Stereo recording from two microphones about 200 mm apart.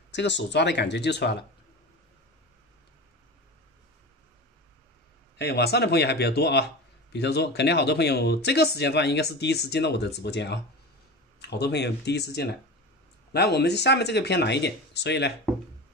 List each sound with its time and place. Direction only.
0.1 s speech: 60° left (ahead or behind)
5.4 s speech: 55° left (ahead or behind)